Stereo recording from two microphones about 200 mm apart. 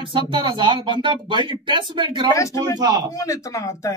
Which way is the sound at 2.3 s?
15° left (ahead or behind).